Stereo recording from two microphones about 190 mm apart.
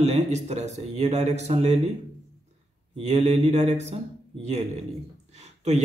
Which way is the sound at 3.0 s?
35° right (ahead or behind).